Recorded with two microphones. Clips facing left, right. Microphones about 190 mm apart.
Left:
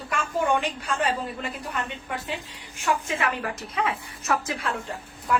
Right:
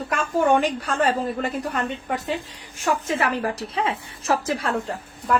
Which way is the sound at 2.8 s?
40° right (ahead or behind).